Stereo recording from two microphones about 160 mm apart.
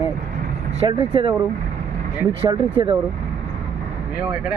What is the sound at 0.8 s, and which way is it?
Speech, 30° right (ahead or behind).